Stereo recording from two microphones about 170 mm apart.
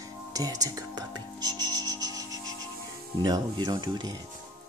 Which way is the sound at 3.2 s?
25° right (ahead or behind).